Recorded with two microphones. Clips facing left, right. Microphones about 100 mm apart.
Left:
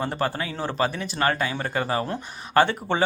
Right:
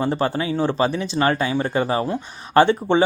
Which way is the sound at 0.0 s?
20° right (ahead or behind).